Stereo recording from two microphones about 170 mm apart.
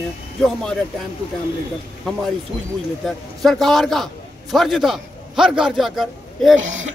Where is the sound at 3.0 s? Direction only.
Centre (ahead or behind).